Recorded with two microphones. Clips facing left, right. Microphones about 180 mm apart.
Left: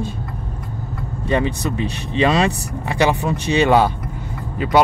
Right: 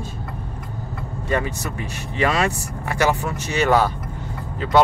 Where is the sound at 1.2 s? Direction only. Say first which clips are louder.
Left 4 dB; 20° left (ahead or behind).